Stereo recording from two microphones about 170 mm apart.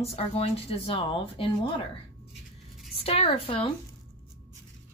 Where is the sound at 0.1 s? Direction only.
35° left (ahead or behind).